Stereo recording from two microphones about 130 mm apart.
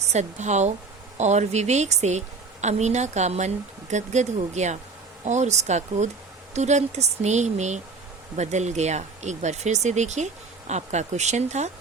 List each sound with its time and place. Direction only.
0.1 s a woman's voice: 60° right (ahead or behind)